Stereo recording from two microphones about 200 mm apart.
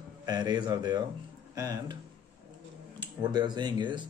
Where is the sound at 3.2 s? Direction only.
20° right (ahead or behind).